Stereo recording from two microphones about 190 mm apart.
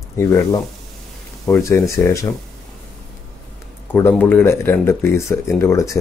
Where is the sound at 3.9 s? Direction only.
10° left (ahead or behind).